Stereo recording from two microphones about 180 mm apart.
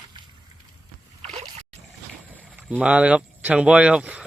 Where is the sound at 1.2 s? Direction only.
35° right (ahead or behind).